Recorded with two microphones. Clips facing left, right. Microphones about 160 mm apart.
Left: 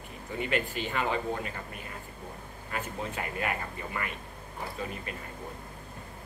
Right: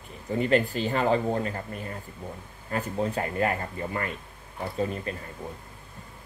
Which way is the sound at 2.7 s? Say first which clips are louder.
Right 8 dB; 40° right (ahead or behind).